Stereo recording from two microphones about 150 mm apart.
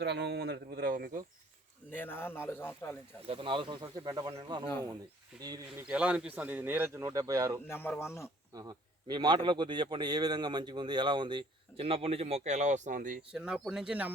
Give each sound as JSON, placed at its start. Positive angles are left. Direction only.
{"t": 0.3, "sound": "speech", "side_deg": -90}
{"t": 1.9, "sound": "a man's voice", "side_deg": 15}
{"t": 3.2, "sound": "a man's voice", "side_deg": -35}
{"t": 5.3, "sound": "a man's voice", "side_deg": -5}
{"t": 7.7, "sound": "a man's voice", "side_deg": 15}
{"t": 8.5, "sound": "a man's voice", "side_deg": -25}
{"t": 13.3, "sound": "speech", "side_deg": -5}